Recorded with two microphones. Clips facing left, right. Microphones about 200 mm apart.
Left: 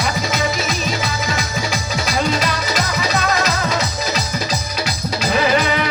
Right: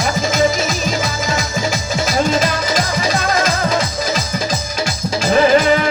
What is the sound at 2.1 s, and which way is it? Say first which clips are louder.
Music: right 3 dB; 45° right (ahead or behind).